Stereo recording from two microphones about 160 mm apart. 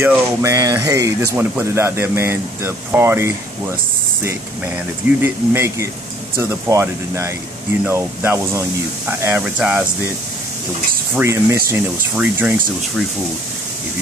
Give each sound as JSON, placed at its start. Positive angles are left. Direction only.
{"t": 0.0, "sound": "speech", "side_deg": -15}
{"t": 11.1, "sound": "speech", "side_deg": -15}